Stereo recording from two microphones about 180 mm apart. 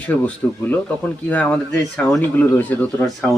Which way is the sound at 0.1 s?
10° left (ahead or behind).